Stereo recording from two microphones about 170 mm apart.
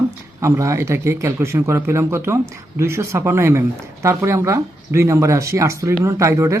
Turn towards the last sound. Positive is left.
turn(degrees=-15)  # may be behind; listen again after turning